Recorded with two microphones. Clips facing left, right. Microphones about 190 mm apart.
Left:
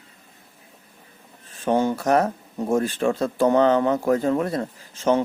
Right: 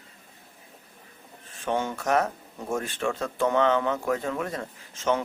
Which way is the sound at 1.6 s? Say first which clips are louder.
Left 7 dB; 35° left (ahead or behind).